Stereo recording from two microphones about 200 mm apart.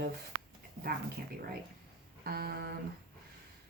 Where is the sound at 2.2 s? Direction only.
50° right (ahead or behind).